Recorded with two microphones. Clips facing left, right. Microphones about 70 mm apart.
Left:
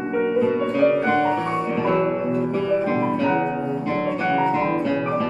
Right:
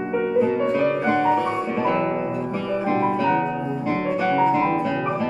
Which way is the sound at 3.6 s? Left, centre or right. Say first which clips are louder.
Even; centre.